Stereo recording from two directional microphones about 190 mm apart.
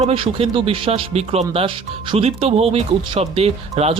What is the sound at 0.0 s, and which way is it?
Speech, 30° right (ahead or behind).